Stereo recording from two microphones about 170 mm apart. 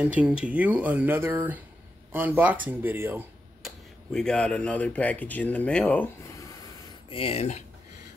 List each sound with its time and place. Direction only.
0.0 s speech: 5° right (ahead or behind)
3.6 s speech: 5° left (ahead or behind)
7.1 s speech: 35° left (ahead or behind)